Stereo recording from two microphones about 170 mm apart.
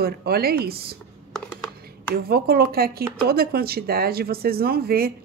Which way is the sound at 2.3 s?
65° right (ahead or behind).